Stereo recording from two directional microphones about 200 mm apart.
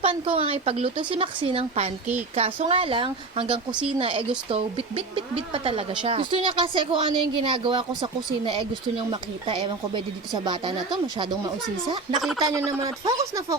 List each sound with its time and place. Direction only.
0.0 s speech: 30° right (ahead or behind)
12.1 s speech: centre (ahead or behind)
12.4 s speech: 15° right (ahead or behind)